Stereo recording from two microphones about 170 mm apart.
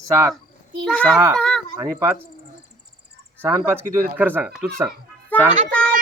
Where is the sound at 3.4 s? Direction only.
10° right (ahead or behind).